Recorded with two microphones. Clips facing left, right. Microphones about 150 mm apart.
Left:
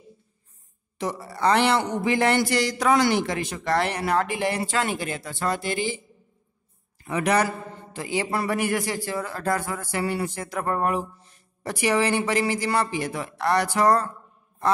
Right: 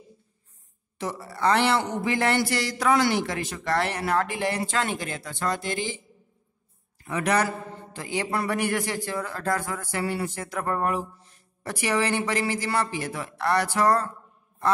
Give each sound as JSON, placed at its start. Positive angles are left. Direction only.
{"t": 0.9, "sound": "speech", "side_deg": 15}
{"t": 7.1, "sound": "speech", "side_deg": 10}